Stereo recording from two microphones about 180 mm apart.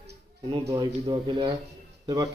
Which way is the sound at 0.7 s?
25° right (ahead or behind).